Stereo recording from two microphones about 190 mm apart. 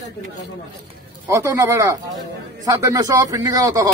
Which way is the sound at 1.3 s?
15° right (ahead or behind).